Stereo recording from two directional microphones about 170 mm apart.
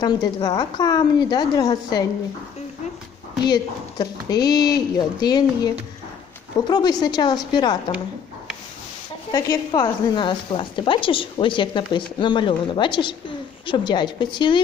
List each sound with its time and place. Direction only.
0.0 s a woman's voice: 25° left (ahead or behind)
3.4 s a woman's voice: 25° left (ahead or behind)
6.7 s a woman's voice: 25° left (ahead or behind)
9.3 s a woman's voice: 20° left (ahead or behind)